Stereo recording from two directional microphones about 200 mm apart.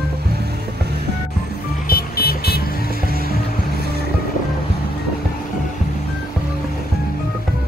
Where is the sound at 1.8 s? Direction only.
50° left (ahead or behind).